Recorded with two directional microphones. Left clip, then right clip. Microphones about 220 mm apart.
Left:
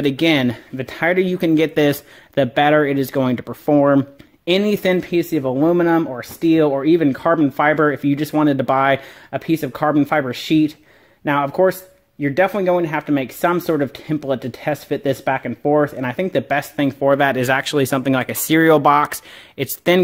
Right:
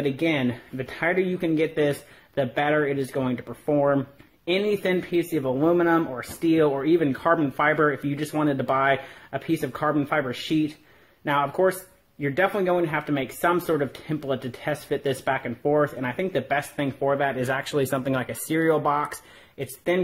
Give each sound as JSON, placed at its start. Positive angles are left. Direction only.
{"t": 0.0, "sound": "speech", "side_deg": 40}